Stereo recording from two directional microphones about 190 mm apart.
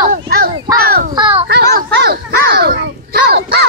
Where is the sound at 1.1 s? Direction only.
25° right (ahead or behind).